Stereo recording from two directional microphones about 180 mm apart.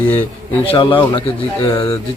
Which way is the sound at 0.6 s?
30° left (ahead or behind).